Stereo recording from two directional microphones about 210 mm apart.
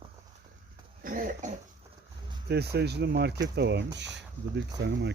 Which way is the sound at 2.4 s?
50° right (ahead or behind).